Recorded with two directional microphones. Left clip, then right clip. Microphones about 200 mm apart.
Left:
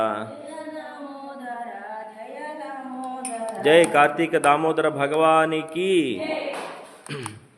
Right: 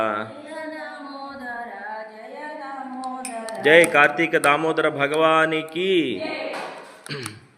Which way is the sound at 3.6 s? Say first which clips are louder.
Right 2 dB; 5° left (ahead or behind).